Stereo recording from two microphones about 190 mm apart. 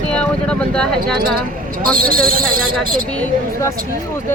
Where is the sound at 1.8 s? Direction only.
50° right (ahead or behind).